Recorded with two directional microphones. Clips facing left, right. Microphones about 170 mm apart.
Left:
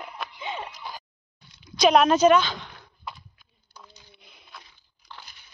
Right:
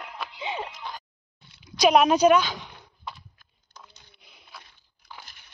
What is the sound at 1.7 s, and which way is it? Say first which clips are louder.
A woman's voice: even; 10° right (ahead or behind).